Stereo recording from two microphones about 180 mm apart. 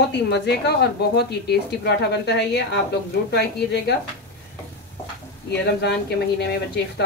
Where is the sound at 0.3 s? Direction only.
65° left (ahead or behind).